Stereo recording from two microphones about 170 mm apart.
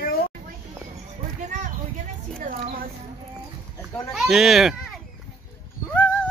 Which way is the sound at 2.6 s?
60° right (ahead or behind).